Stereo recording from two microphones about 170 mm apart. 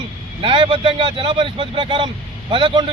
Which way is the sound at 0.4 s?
30° right (ahead or behind).